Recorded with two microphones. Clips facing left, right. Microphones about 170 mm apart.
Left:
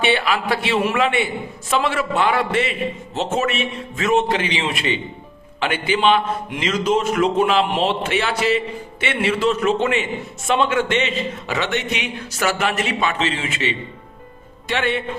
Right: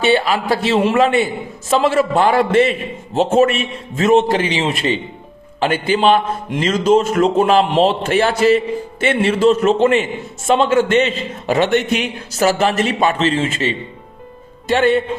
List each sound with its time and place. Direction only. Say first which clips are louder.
0.0 s a man's voice: right 4 dB; 35° right (ahead or behind)